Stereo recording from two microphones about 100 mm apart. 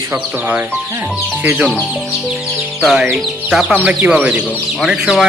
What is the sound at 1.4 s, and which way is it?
Speech, 15° right (ahead or behind).